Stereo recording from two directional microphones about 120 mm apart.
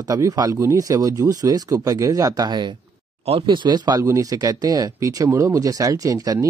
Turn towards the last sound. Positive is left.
turn(degrees=-30)  # may be behind; listen again after turning